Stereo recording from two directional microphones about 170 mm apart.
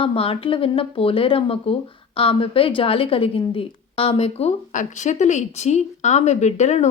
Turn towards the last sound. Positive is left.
turn(degrees=40)  # may be behind; listen again after turning